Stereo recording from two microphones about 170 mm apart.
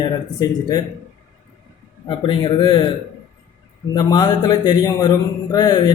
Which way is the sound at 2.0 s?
30° left (ahead or behind).